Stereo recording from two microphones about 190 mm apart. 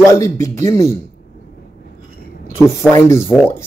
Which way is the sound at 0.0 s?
15° left (ahead or behind).